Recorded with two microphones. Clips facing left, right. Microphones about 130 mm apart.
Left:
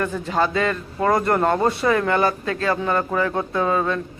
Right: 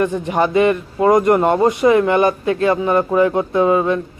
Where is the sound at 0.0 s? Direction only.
20° right (ahead or behind).